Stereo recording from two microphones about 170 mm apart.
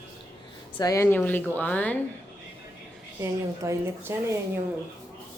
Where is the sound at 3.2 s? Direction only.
15° right (ahead or behind).